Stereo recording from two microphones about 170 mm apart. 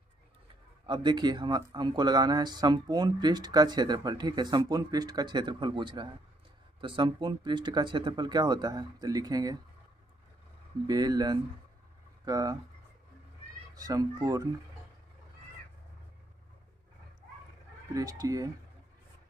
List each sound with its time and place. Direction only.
0.8 s speech: 25° right (ahead or behind)
10.9 s speech: 25° right (ahead or behind)
13.7 s speech: 20° right (ahead or behind)
17.9 s speech: 20° right (ahead or behind)